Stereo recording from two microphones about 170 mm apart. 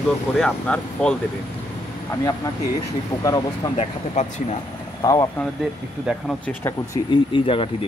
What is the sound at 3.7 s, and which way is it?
Speech, 40° left (ahead or behind).